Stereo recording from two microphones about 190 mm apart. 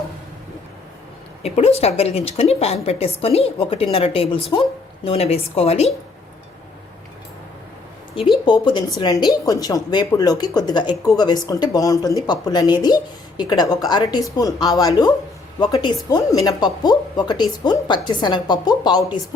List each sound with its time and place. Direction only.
1.4 s a woman's voice: 35° left (ahead or behind)
8.4 s a woman's voice: 25° left (ahead or behind)